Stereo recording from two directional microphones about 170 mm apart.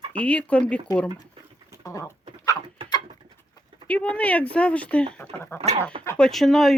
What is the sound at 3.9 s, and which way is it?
Speech, 10° left (ahead or behind).